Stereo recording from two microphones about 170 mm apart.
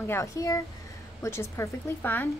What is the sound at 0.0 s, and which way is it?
A woman's voice, 15° left (ahead or behind).